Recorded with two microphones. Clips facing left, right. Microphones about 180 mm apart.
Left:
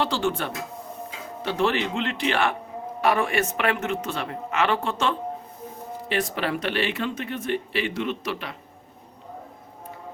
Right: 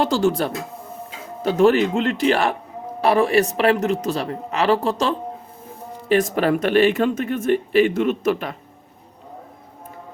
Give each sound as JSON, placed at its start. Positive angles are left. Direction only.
{"t": 0.0, "sound": "a man's voice", "side_deg": -40}